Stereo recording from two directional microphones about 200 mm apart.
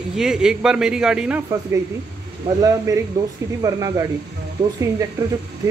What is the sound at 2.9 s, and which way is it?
Speech, 15° right (ahead or behind).